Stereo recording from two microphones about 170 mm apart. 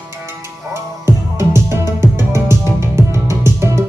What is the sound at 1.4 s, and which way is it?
Music, 15° right (ahead or behind).